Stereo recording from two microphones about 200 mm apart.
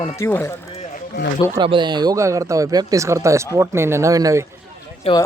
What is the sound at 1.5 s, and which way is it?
Speech, 25° right (ahead or behind).